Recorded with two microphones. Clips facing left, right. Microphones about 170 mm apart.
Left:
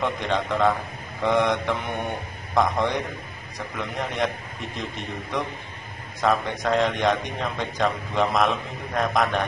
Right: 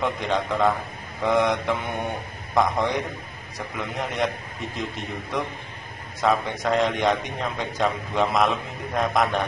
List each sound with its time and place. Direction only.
0.0 s a man's voice: 5° right (ahead or behind)
6.2 s a man's voice: centre (ahead or behind)